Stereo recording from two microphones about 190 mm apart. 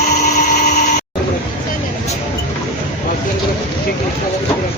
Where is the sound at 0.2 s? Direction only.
40° left (ahead or behind).